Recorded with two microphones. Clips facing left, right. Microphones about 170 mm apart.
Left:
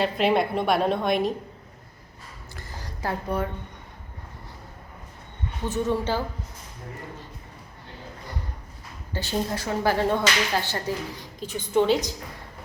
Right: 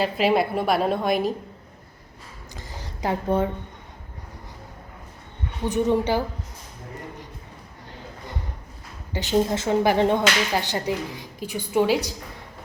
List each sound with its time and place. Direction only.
0.0 s a woman's voice: centre (ahead or behind)
2.6 s a sound: 20° right (ahead or behind)
5.6 s speech: 15° right (ahead or behind)
9.1 s speech: 20° right (ahead or behind)